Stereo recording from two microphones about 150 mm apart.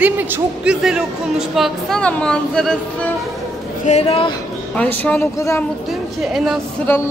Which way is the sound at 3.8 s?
45° left (ahead or behind).